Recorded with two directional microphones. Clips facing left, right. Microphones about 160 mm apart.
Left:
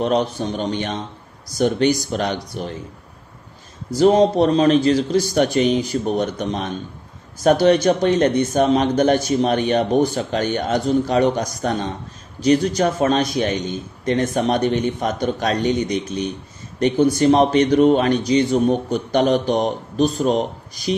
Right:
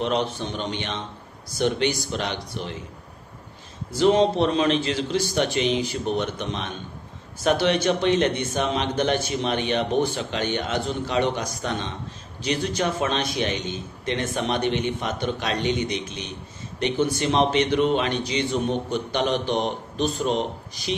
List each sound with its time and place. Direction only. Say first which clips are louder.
0.0 s a man's voice: left 5 dB; 40° left (ahead or behind)
3.9 s a man's voice: left 5 dB; 40° left (ahead or behind)